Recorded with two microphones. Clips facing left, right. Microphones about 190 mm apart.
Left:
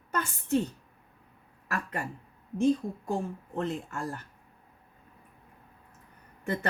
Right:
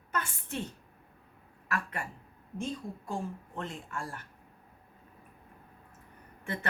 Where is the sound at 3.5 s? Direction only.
35° left (ahead or behind).